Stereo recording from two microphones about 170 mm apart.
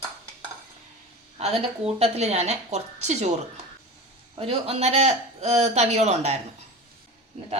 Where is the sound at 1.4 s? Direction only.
35° right (ahead or behind).